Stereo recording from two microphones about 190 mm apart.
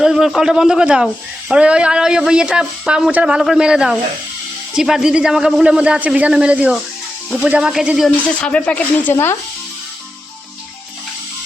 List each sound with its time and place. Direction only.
0.0 s speech: centre (ahead or behind)